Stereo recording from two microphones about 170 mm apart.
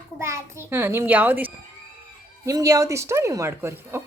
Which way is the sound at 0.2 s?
15° right (ahead or behind).